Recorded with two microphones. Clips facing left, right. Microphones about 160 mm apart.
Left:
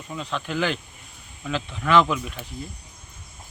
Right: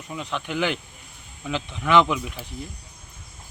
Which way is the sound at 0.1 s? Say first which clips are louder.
Even; 15° right (ahead or behind).